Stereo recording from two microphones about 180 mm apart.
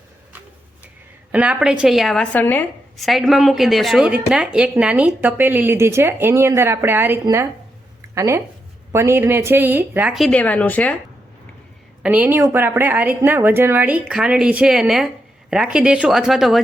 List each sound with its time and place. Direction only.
1.3 s a woman's voice: 5° right (ahead or behind)
12.0 s a woman's voice: 10° right (ahead or behind)